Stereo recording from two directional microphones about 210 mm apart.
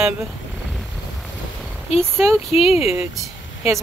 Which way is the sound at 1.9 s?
Centre (ahead or behind).